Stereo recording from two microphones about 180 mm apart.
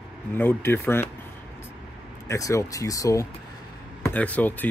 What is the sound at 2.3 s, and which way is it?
Speech, 15° left (ahead or behind).